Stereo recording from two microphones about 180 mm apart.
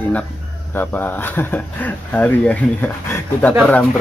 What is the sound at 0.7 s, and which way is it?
Speech, 10° left (ahead or behind).